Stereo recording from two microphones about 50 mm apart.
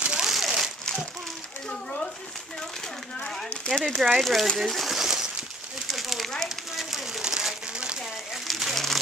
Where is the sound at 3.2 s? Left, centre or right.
Centre.